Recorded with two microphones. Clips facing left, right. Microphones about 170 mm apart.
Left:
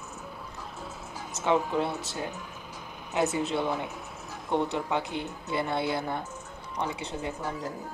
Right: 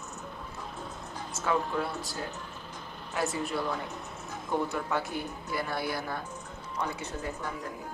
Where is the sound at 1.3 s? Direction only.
20° left (ahead or behind).